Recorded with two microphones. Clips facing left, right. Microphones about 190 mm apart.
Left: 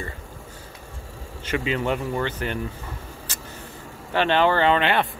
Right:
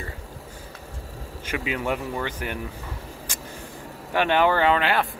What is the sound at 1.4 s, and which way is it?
Speech, 10° right (ahead or behind).